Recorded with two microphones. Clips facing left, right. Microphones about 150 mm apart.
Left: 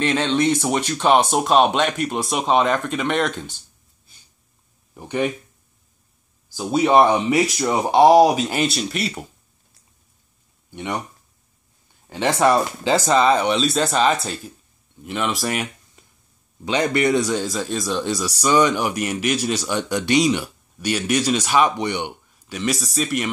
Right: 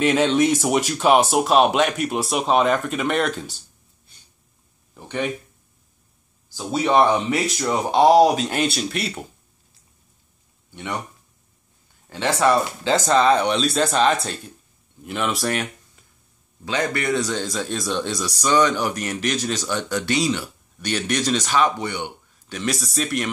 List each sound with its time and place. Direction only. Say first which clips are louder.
0.0 s speech: right 2 dB; 5° right (ahead or behind)
4.9 s speech: left 3 dB; 10° left (ahead or behind)
6.5 s speech: left 3 dB; 15° left (ahead or behind)
10.7 s speech: left 3 dB; 15° left (ahead or behind)
12.1 s speech: left 2 dB; 15° left (ahead or behind)
16.6 s speech: left 4 dB; 20° left (ahead or behind)
22.5 s speech: left 2 dB; centre (ahead or behind)